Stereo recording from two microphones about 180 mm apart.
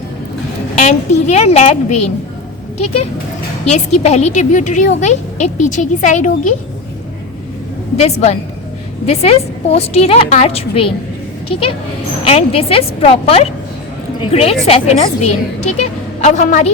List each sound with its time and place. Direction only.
0.8 s a woman's voice: 40° left (ahead or behind)
7.9 s a woman's voice: 35° left (ahead or behind)
12.2 s a woman's voice: 30° left (ahead or behind)